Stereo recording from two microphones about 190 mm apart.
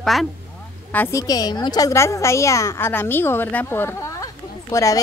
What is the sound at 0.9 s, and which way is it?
A woman's voice, 15° left (ahead or behind).